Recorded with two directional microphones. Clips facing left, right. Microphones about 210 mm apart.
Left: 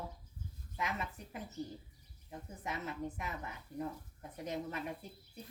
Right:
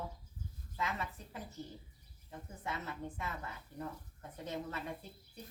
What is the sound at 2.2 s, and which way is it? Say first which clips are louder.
A woman's voice: even; 15° left (ahead or behind).